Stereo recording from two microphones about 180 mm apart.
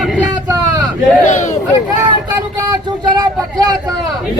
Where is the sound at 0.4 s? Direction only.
20° right (ahead or behind).